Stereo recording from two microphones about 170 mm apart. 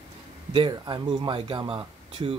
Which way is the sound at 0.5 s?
30° right (ahead or behind).